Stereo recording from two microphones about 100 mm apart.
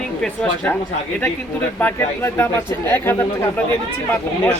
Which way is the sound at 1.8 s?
20° left (ahead or behind).